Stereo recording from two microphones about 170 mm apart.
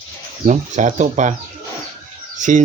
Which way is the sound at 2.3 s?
45° right (ahead or behind).